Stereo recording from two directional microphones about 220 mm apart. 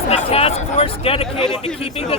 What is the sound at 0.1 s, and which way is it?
A man's voice, 25° left (ahead or behind).